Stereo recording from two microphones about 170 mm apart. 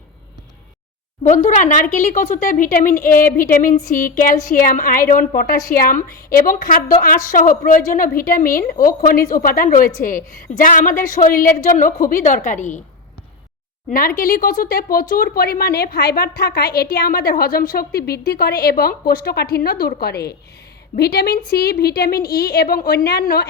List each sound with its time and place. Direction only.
1.2 s a woman's voice: 45° left (ahead or behind)
13.9 s speech: 60° left (ahead or behind)